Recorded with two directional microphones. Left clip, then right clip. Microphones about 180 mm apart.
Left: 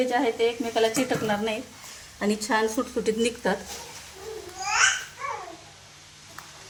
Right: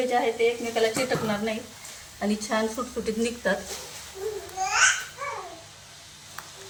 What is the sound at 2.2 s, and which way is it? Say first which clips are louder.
Speech: left 2 dB; 60° left (ahead or behind).